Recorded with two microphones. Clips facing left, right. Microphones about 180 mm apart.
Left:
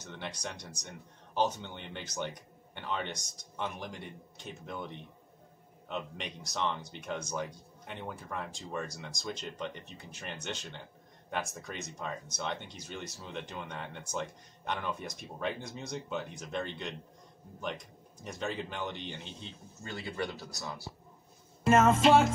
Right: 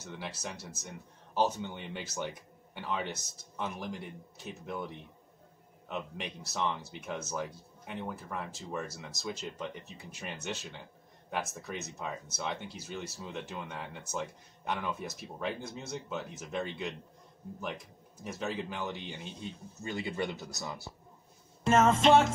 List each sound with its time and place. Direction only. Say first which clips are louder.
0.0 s speech: even; 5° right (ahead or behind)
18.2 s speech: right 1 dB; 5° right (ahead or behind)
19.8 s speech: right 2 dB; 15° right (ahead or behind)
21.6 s speech: left 1 dB; 5° left (ahead or behind)